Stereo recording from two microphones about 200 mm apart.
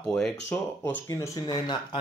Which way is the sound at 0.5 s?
10° left (ahead or behind).